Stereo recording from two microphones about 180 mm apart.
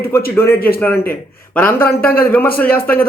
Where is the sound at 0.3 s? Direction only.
15° left (ahead or behind).